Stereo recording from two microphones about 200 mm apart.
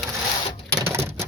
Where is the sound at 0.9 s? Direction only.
10° right (ahead or behind).